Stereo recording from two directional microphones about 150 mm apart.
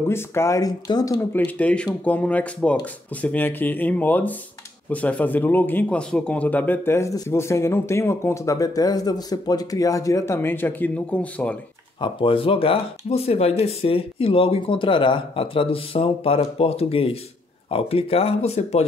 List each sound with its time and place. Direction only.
0.1 s speech: 20° left (ahead or behind)
1.3 s speech: 10° left (ahead or behind)
12.0 s speech: 35° left (ahead or behind)